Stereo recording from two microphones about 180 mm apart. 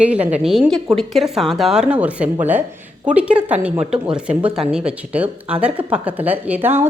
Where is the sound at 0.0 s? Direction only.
5° right (ahead or behind).